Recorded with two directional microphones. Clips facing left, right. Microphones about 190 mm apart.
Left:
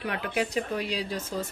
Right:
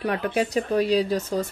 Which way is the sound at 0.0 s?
40° right (ahead or behind).